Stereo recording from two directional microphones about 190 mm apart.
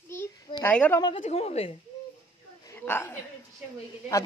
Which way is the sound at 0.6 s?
10° left (ahead or behind).